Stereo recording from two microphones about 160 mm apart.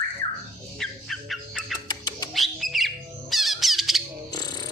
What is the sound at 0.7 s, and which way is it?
Squawk, centre (ahead or behind).